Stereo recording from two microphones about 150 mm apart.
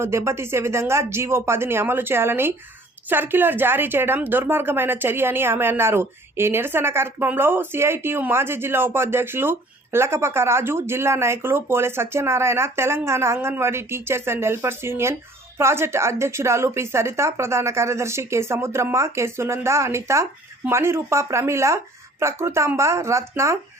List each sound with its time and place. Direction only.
0.0 s a woman's voice: 20° right (ahead or behind)